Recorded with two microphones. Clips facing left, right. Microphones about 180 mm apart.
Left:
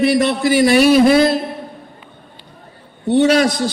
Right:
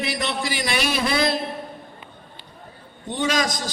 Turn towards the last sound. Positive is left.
turn(degrees=70)  # may be behind; listen again after turning